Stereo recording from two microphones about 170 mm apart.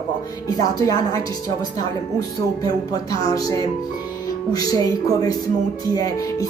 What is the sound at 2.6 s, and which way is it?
A woman's voice, 20° left (ahead or behind).